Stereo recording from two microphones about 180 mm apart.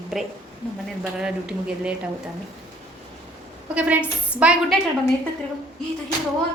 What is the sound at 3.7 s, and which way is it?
A woman's voice, 5° right (ahead or behind).